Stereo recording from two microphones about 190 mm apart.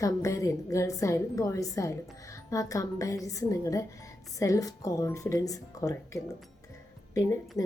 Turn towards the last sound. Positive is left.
turn(degrees=15)  # may be behind; listen again after turning